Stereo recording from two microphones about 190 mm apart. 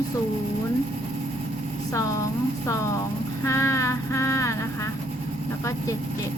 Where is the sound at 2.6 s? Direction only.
15° left (ahead or behind).